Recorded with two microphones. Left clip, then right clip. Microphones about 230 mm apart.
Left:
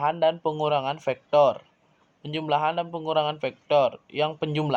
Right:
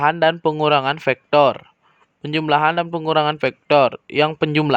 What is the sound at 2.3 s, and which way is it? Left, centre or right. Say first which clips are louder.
A man's voice: right 8 dB; right.